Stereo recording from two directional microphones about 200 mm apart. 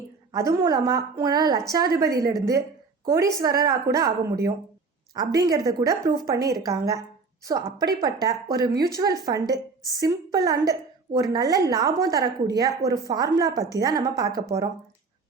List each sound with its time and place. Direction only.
0.3 s a woman's voice: 15° right (ahead or behind)
5.1 s a woman's voice: 20° right (ahead or behind)